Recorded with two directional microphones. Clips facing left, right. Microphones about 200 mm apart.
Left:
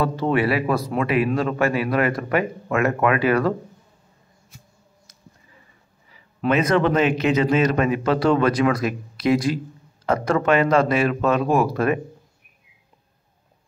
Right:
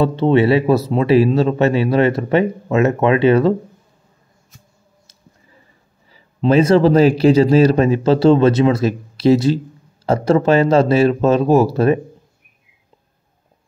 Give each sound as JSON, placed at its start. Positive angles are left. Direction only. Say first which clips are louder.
{"t": 0.0, "sound": "speech", "louder": "right 7 dB", "side_deg": -25}
{"t": 6.1, "sound": "speech", "louder": "right 7 dB", "side_deg": -30}